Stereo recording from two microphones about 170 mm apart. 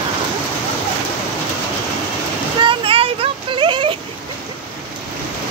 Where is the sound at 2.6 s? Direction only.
30° right (ahead or behind).